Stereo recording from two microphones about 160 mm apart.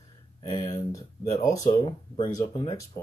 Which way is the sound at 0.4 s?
25° left (ahead or behind).